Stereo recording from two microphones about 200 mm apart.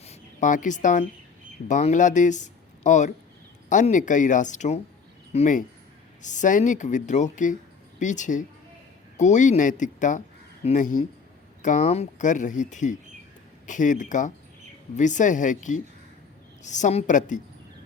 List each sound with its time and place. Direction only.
0.0 s speech: 35° left (ahead or behind)